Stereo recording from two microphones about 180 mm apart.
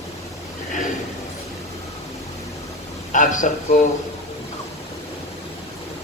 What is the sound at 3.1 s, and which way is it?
Speech, 45° left (ahead or behind).